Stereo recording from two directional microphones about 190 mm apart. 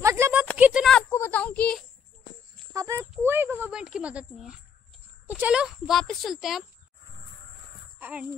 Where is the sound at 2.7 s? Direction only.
15° right (ahead or behind).